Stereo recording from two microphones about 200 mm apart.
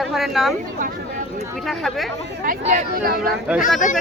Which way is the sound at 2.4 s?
40° right (ahead or behind).